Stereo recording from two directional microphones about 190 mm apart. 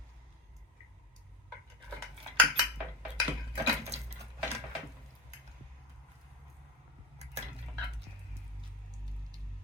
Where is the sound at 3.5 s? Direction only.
35° right (ahead or behind).